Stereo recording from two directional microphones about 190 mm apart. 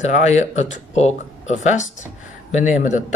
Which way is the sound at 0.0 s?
35° left (ahead or behind).